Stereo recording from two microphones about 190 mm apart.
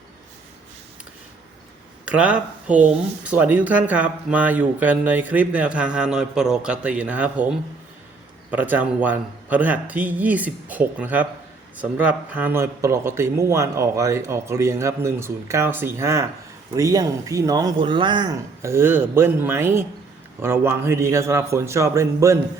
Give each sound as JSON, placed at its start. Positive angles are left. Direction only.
{"t": 2.0, "sound": "speech", "side_deg": -5}
{"t": 8.4, "sound": "speech", "side_deg": -10}